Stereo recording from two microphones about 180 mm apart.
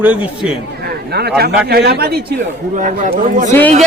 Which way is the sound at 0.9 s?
65° right (ahead or behind).